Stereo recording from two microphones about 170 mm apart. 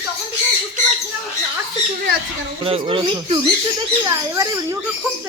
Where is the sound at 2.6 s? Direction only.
35° right (ahead or behind).